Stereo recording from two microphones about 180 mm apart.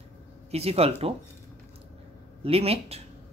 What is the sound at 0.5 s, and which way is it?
Speech, 35° right (ahead or behind).